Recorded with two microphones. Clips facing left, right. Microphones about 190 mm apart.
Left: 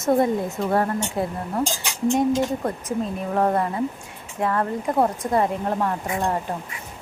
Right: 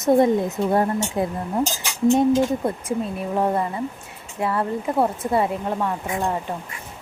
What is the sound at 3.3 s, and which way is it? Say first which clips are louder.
Speech: left 1 dB; 5° right (ahead or behind).